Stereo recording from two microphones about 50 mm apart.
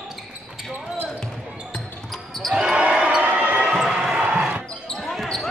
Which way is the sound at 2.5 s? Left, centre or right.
Centre.